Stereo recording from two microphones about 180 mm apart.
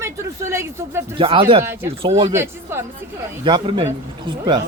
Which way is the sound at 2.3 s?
15° right (ahead or behind).